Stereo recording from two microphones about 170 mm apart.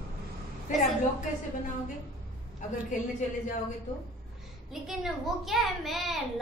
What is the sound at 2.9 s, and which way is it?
Speech, 45° left (ahead or behind).